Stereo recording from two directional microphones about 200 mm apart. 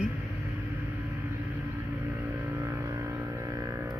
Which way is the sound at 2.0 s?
10° right (ahead or behind).